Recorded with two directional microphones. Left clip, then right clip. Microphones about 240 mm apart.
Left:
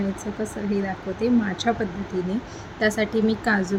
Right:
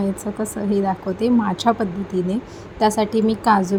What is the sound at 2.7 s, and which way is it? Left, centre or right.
Speech, centre.